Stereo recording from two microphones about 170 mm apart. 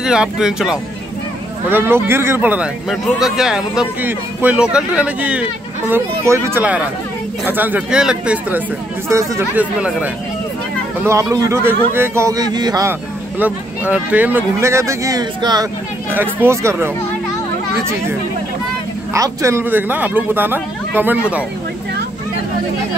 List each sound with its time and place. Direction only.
0.0 s a man's voice: 5° right (ahead or behind)
11.0 s a man's voice: 15° right (ahead or behind)
13.4 s a man's voice: 10° right (ahead or behind)
16.1 s a man's voice: 10° right (ahead or behind)
19.1 s a man's voice: 20° right (ahead or behind)